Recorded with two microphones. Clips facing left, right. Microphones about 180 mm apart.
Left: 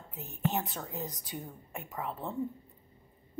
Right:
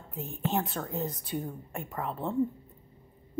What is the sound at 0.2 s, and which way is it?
A woman's voice, 50° right (ahead or behind).